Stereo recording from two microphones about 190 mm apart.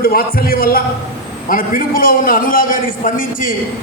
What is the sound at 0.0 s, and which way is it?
A man's voice, 50° left (ahead or behind).